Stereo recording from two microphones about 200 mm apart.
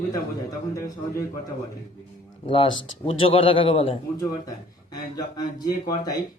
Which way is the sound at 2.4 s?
25° left (ahead or behind).